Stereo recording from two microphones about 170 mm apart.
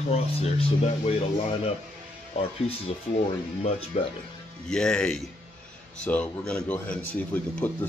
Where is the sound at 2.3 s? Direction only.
40° left (ahead or behind).